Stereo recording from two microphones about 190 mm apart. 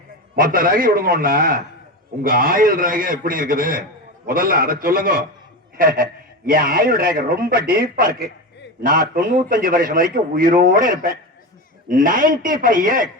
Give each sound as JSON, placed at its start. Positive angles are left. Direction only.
{"t": 0.3, "sound": "a man's voice", "side_deg": -50}